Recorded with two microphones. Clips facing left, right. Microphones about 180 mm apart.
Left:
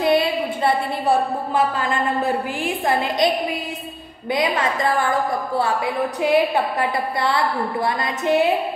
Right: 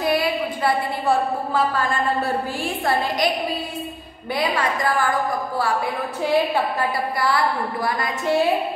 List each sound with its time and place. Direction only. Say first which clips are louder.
0.0 s a woman's voice: left 3 dB; 25° left (ahead or behind)
4.3 s a woman's voice: left 2 dB; 20° left (ahead or behind)